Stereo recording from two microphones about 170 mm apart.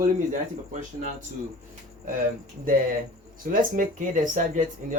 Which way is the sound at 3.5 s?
50° right (ahead or behind).